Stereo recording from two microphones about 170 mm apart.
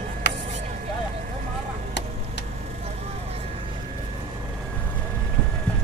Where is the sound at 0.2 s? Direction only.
90° left.